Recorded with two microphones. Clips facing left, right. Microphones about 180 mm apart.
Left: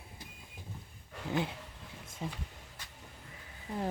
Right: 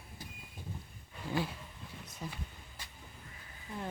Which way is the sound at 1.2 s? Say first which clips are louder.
Left 2 dB; 90° left.